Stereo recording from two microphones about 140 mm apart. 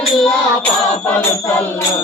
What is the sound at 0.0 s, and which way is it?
Music, 5° left (ahead or behind).